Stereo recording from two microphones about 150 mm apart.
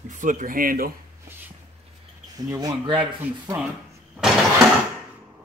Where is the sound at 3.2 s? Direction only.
10° right (ahead or behind).